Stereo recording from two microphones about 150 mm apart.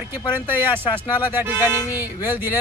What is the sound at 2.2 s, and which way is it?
Speech, 15° right (ahead or behind).